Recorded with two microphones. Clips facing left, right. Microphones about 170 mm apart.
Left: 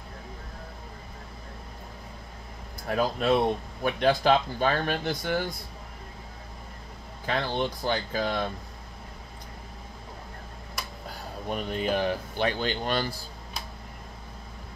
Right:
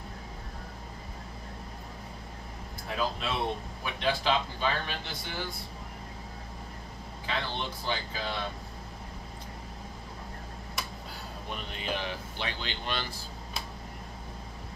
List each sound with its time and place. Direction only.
2.9 s speech: 45° left (ahead or behind)
7.2 s speech: 45° left (ahead or behind)
11.4 s speech: 45° left (ahead or behind)